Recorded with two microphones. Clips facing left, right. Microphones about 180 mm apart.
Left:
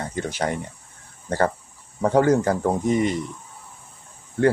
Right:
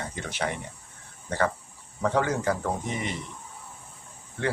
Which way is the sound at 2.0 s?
40° left (ahead or behind).